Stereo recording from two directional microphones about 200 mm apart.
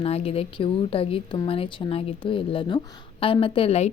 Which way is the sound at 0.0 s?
30° left (ahead or behind).